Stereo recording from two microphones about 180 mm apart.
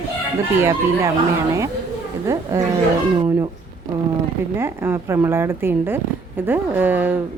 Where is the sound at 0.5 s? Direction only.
15° right (ahead or behind).